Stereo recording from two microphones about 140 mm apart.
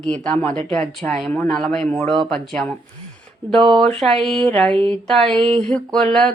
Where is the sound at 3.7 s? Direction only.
5° left (ahead or behind).